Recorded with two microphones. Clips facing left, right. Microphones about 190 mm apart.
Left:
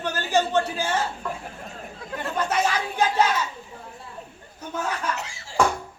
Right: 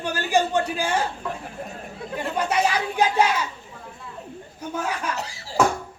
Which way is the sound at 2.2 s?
10° right (ahead or behind).